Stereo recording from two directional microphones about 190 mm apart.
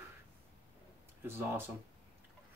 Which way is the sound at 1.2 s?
10° right (ahead or behind).